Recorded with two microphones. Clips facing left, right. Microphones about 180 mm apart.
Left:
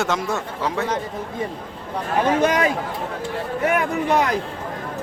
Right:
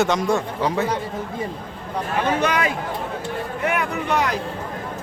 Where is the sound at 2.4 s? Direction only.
40° left (ahead or behind).